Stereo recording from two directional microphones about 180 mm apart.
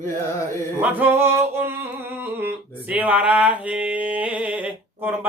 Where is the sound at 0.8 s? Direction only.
10° right (ahead or behind).